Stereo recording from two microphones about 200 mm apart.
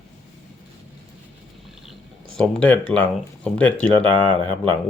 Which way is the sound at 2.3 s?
5° left (ahead or behind).